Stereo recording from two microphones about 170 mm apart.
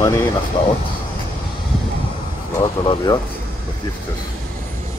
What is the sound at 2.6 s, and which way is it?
Speech, 25° left (ahead or behind).